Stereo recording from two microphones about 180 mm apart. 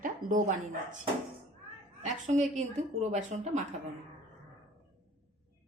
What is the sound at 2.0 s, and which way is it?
A woman's voice, 40° right (ahead or behind).